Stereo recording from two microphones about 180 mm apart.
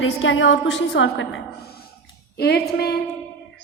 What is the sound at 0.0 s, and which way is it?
A woman's voice, 90° left.